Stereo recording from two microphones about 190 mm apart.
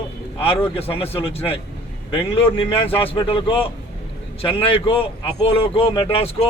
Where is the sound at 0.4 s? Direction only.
30° left (ahead or behind).